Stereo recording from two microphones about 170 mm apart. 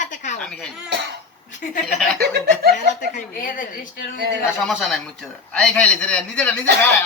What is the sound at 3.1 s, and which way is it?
Speech, 50° left (ahead or behind).